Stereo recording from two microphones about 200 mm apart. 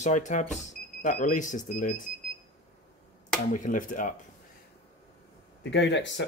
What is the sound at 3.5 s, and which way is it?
Speech, 40° left (ahead or behind).